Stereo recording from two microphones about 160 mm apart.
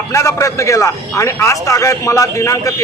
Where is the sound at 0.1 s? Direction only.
20° left (ahead or behind).